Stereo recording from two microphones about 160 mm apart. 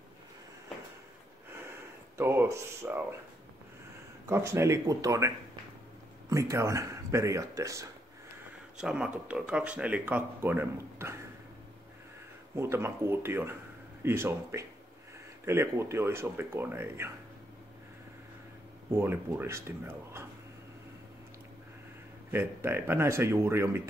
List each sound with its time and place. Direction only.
2.1 s speech: 15° right (ahead or behind)
4.3 s speech: 15° right (ahead or behind)
6.3 s speech: 20° right (ahead or behind)
8.7 s speech: 5° right (ahead or behind)
12.5 s speech: 15° right (ahead or behind)
18.9 s speech: 15° right (ahead or behind)
22.3 s speech: 15° right (ahead or behind)